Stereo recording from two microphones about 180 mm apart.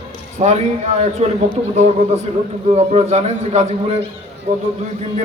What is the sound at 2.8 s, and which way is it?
A man's voice, 40° right (ahead or behind).